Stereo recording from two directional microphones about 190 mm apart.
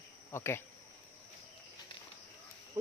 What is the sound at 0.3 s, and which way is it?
Speech, 15° left (ahead or behind).